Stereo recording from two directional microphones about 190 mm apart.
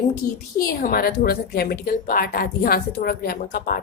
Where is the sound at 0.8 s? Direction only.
50° left (ahead or behind).